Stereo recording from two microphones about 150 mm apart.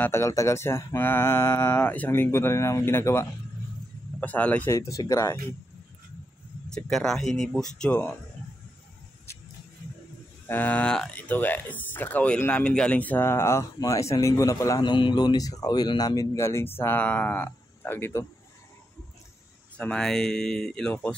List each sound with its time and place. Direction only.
0.0 s speech: 20° left (ahead or behind)
6.7 s speech: 5° left (ahead or behind)
10.5 s speech: 10° left (ahead or behind)
19.8 s speech: 5° left (ahead or behind)